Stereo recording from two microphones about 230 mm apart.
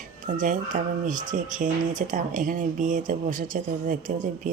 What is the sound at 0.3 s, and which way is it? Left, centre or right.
Speech, right.